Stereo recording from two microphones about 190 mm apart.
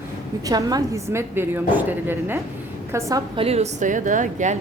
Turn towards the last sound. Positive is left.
turn(degrees=-40)  # may be behind; listen again after turning